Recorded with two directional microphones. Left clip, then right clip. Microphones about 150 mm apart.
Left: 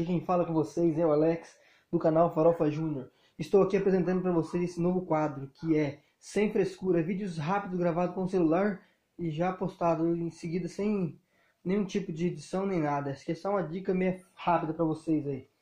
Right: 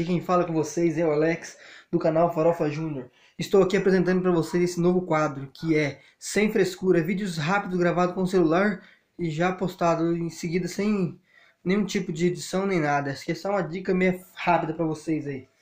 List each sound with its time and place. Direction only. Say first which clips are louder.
0.0 s speech: right 5 dB; 10° left (ahead or behind)
3.3 s speech: right 4 dB; 5° left (ahead or behind)